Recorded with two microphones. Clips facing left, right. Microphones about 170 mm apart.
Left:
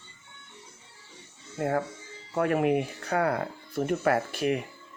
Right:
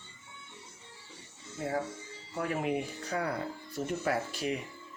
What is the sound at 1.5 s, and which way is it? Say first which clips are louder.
Speech: left 6 dB; 60° left (ahead or behind).